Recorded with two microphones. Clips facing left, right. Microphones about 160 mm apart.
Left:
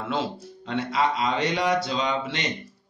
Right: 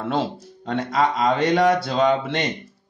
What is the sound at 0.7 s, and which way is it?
Speech, 45° right (ahead or behind).